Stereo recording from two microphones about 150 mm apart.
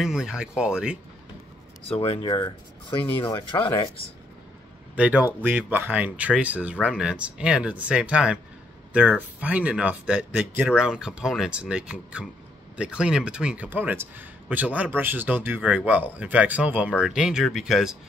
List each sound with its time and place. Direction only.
0.0 s speech: 5° right (ahead or behind)
1.9 s speech: 40° left (ahead or behind)
4.9 s a man's voice: 10° right (ahead or behind)